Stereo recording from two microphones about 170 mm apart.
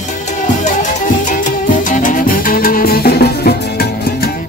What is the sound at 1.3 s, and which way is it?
Music, 45° left (ahead or behind).